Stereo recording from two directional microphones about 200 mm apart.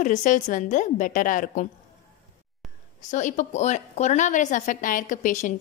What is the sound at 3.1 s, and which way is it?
A woman's voice, 35° left (ahead or behind).